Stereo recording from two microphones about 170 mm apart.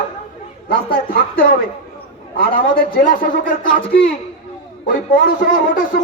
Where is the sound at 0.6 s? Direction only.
60° left (ahead or behind).